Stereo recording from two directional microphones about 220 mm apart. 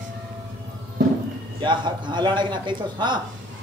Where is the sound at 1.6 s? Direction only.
20° right (ahead or behind).